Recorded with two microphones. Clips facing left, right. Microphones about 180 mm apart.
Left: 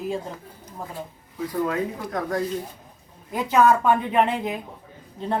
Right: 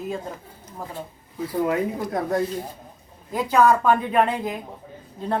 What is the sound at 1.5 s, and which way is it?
Speech, 20° right (ahead or behind).